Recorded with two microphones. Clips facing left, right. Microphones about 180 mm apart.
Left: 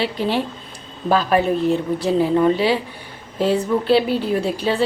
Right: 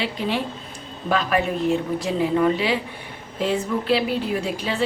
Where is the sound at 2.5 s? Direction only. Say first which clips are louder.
Left 4 dB; 30° left (ahead or behind).